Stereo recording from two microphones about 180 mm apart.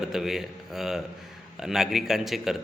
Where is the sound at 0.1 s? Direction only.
Centre (ahead or behind).